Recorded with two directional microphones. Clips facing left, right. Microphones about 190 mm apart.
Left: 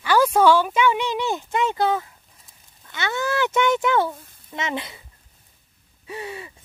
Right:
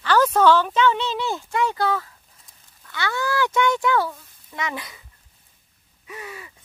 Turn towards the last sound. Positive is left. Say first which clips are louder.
# left 4 dB
turn(degrees=25)  # may be behind; listen again after turning